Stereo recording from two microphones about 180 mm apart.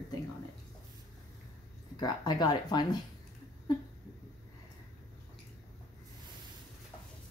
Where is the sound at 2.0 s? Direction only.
25° left (ahead or behind).